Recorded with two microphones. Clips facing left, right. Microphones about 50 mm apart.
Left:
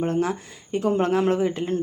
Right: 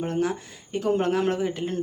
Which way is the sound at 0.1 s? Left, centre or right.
Left.